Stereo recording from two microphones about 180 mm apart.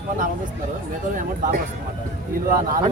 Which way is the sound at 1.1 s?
50° right (ahead or behind).